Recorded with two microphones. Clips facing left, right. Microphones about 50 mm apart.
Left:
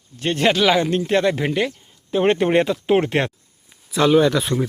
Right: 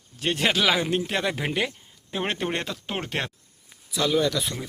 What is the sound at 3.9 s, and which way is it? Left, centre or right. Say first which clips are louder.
Speech: left 8 dB; left.